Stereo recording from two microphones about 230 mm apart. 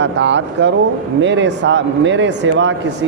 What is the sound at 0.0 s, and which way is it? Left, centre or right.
A man's voice, right.